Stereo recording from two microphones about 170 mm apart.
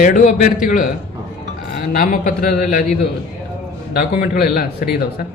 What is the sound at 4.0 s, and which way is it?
A man's voice, 60° left (ahead or behind).